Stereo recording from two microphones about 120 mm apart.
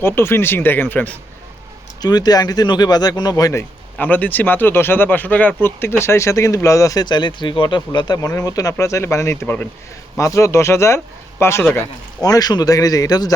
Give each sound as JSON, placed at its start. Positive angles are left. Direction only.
{"t": 0.0, "sound": "speech", "side_deg": 20}
{"t": 2.0, "sound": "speech", "side_deg": 35}
{"t": 3.9, "sound": "speech", "side_deg": 15}